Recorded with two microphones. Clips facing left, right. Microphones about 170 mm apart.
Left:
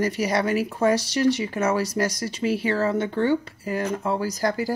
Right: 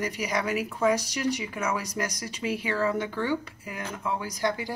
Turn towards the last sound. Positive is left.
turn(degrees=40)  # may be behind; listen again after turning